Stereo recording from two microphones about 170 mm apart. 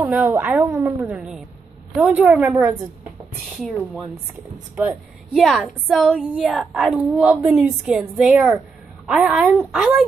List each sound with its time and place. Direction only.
0.0 s speech: 10° right (ahead or behind)
1.0 s a woman's voice: 5° right (ahead or behind)
3.6 s a woman's voice: centre (ahead or behind)